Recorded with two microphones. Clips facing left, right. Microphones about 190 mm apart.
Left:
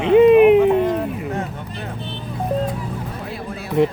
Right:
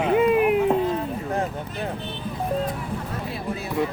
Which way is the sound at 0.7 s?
75° left (ahead or behind).